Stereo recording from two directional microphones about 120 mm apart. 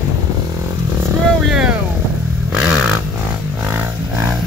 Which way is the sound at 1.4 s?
5° right (ahead or behind).